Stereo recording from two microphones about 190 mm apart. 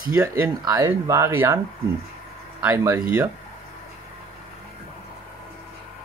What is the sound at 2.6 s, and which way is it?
Speech, 10° right (ahead or behind).